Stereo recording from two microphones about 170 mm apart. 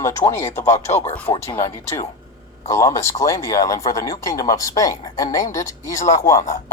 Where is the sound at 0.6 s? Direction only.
40° left (ahead or behind).